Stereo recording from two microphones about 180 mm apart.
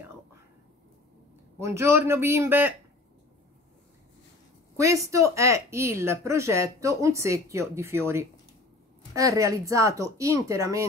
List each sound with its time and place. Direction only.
1.6 s speech: 15° right (ahead or behind)
4.7 s speech: 15° right (ahead or behind)